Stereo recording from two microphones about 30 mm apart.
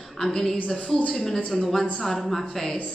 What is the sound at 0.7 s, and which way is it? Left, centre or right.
Speech, left.